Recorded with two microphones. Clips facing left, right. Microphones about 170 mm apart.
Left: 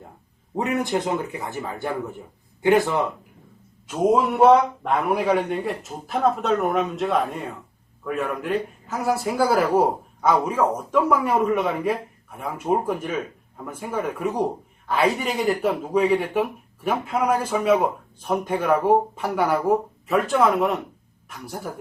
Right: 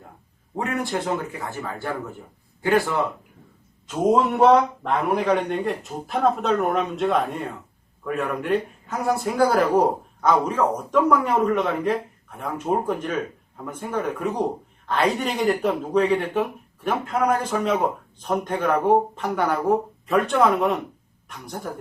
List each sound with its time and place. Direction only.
0.5 s speech: 20° left (ahead or behind)
3.8 s a man's voice: 5° left (ahead or behind)